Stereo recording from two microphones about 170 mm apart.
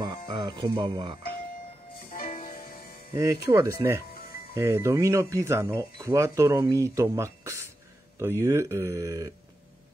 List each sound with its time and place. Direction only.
0.0 s speech: 25° right (ahead or behind)
2.0 s music: 55° left (ahead or behind)
3.2 s speech: 20° right (ahead or behind)